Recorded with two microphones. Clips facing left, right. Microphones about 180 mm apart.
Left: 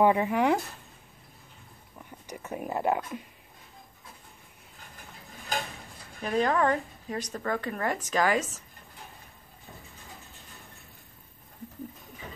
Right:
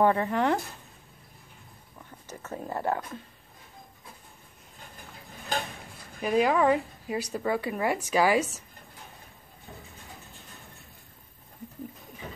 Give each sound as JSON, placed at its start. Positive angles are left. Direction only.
{"t": 0.0, "sound": "speech", "side_deg": 10}
{"t": 2.0, "sound": "speech", "side_deg": 10}
{"t": 6.2, "sound": "speech", "side_deg": -10}